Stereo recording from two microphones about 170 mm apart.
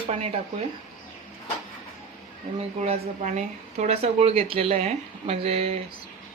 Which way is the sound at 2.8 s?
40° right (ahead or behind).